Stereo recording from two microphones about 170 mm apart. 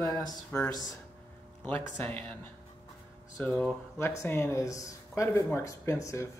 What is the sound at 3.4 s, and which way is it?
Speech, 10° left (ahead or behind).